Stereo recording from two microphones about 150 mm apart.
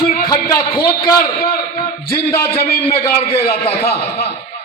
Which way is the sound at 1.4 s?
90° left.